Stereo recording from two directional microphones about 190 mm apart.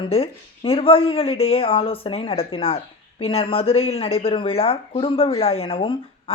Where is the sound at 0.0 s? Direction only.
30° left (ahead or behind).